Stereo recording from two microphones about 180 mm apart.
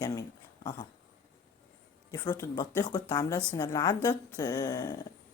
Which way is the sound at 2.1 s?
15° left (ahead or behind).